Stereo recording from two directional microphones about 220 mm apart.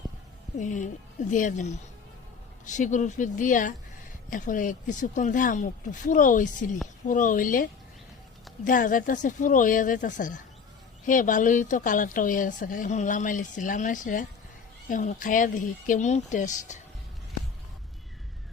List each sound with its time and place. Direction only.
0.5 s a woman's voice: 35° left (ahead or behind)